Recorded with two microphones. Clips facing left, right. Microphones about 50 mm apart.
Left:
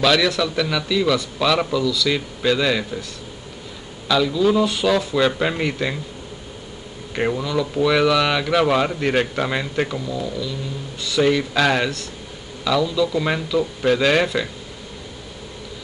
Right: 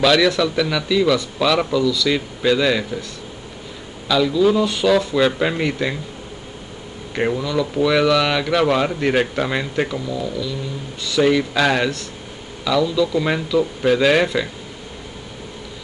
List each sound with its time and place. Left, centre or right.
0.0 s speech: centre
4.1 s speech: centre
7.3 s speech: centre